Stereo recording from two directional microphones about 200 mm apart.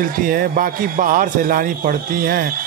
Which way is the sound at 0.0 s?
45° right (ahead or behind).